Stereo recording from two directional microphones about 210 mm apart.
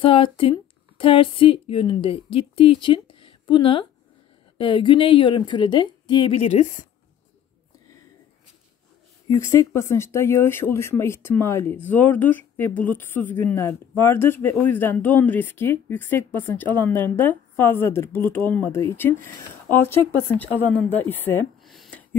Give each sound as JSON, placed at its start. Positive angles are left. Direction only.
{"t": 0.0, "sound": "a woman's voice", "side_deg": 25}
{"t": 9.3, "sound": "speech", "side_deg": 15}